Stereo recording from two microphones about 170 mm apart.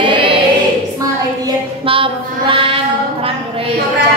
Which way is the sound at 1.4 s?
30° right (ahead or behind).